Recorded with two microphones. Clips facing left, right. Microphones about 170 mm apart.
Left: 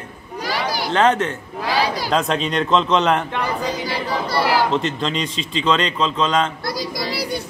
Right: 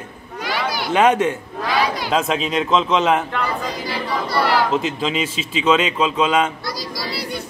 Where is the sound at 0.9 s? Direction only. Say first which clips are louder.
Right 2 dB; 10° right (ahead or behind).